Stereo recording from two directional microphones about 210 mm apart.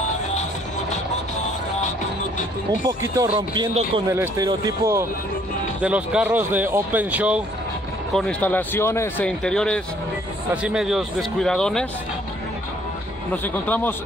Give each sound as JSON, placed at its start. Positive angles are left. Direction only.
{"t": 2.9, "sound": "speech", "side_deg": -15}
{"t": 13.3, "sound": "speech", "side_deg": 10}